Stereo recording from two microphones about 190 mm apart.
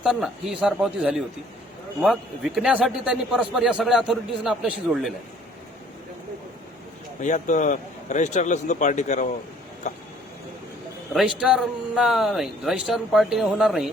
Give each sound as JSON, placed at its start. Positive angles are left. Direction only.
{"t": 0.0, "sound": "a man's voice", "side_deg": -5}
{"t": 7.2, "sound": "speech", "side_deg": 40}
{"t": 11.1, "sound": "a man's voice", "side_deg": 0}